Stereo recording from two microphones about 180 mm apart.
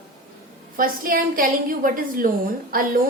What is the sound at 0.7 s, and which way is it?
A woman's voice, 50° right (ahead or behind).